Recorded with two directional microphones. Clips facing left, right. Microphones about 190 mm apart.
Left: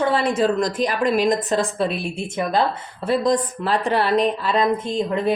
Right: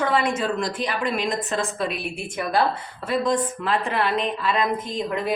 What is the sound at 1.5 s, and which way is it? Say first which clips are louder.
Speech: left 5 dB; 30° left (ahead or behind).